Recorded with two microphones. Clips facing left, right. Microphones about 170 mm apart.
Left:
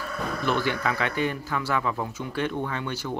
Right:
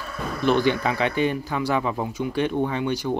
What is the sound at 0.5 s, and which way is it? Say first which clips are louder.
A man's voice: right 6 dB; 20° right (ahead or behind).